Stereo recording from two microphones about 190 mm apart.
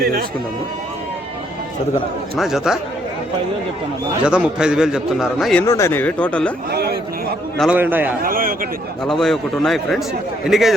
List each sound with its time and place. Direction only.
0.0 s a man's voice: 50° right (ahead or behind)
2.4 s a man's voice: centre (ahead or behind)
4.2 s a man's voice: 5° right (ahead or behind)
5.6 s speech: 15° left (ahead or behind)
6.7 s a sound: 55° right (ahead or behind)
7.6 s a man's voice: 10° right (ahead or behind)
8.2 s a man's voice: 50° right (ahead or behind)
9.0 s a man's voice: centre (ahead or behind)